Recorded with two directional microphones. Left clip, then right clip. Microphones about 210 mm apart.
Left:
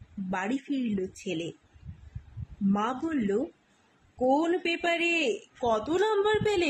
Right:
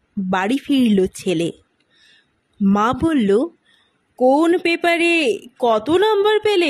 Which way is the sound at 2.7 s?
50° right (ahead or behind).